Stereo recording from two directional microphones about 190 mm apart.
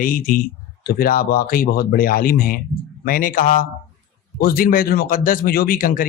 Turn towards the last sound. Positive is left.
turn(degrees=50)  # may be behind; listen again after turning